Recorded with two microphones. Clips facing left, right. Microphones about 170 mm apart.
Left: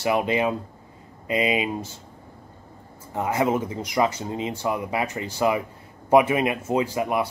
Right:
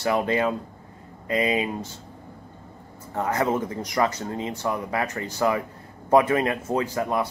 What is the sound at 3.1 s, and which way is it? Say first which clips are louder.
Speech: left 1 dB; 15° left (ahead or behind).